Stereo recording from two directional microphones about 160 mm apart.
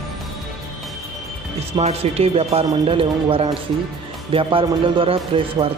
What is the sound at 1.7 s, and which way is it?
Speech, 40° right (ahead or behind).